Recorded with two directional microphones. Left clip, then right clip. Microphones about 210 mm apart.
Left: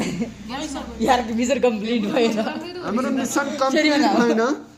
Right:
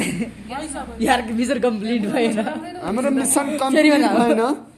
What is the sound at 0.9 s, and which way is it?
A woman's voice, 35° right (ahead or behind).